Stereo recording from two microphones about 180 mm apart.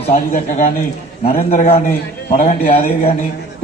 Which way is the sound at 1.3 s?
35° left (ahead or behind).